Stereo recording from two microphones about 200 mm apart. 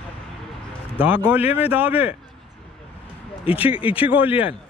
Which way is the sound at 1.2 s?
10° right (ahead or behind).